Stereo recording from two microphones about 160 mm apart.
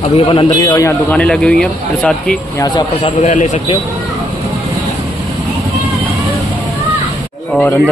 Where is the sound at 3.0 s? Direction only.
50° left (ahead or behind).